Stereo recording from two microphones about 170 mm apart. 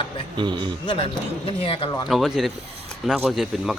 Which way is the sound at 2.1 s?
Centre (ahead or behind).